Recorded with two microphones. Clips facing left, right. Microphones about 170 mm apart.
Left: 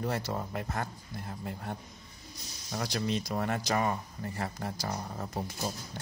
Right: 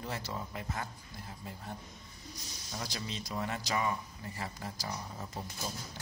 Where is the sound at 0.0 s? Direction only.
55° left (ahead or behind).